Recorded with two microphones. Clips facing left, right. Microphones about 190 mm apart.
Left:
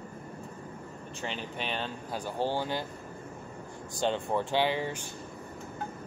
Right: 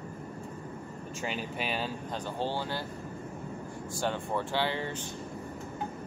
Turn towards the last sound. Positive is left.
turn(degrees=10)  # may be behind; listen again after turning